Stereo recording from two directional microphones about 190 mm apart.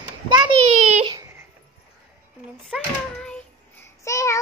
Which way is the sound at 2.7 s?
5° left (ahead or behind).